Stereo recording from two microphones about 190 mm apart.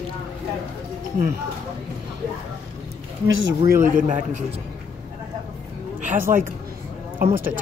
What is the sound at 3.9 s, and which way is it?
Speech, 40° right (ahead or behind).